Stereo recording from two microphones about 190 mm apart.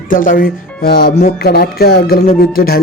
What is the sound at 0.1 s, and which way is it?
Speech, 45° left (ahead or behind).